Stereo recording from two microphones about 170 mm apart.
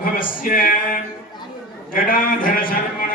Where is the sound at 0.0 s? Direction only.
55° left (ahead or behind).